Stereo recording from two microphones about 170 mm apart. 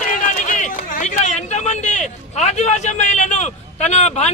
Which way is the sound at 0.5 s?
50° left (ahead or behind).